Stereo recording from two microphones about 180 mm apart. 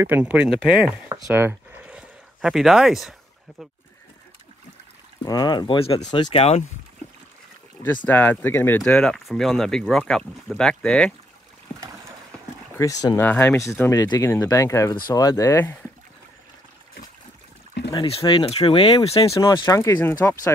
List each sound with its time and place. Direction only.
0.0 s speech: 10° right (ahead or behind)
1.3 s a sound: 10° right (ahead or behind)
5.2 s speech: 20° left (ahead or behind)
7.8 s speech: 10° left (ahead or behind)
12.7 s speech: 15° left (ahead or behind)
17.9 s speech: 30° left (ahead or behind)
19.4 s speech: 20° left (ahead or behind)